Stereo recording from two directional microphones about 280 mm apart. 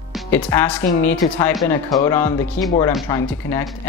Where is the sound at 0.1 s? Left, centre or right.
Centre.